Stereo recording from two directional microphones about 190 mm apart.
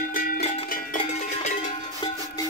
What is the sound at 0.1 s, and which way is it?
Music, 50° left (ahead or behind).